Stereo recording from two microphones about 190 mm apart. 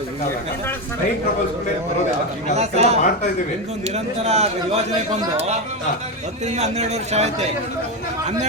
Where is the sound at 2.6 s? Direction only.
35° right (ahead or behind).